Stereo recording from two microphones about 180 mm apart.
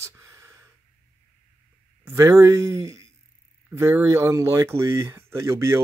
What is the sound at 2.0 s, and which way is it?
Speech, 15° right (ahead or behind).